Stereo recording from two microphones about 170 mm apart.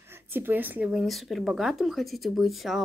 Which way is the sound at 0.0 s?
15° right (ahead or behind).